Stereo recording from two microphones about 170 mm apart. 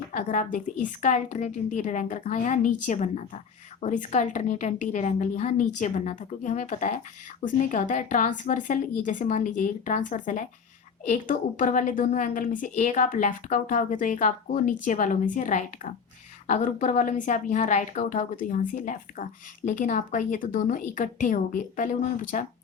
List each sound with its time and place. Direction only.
0.1 s a woman's voice: 50° left (ahead or behind)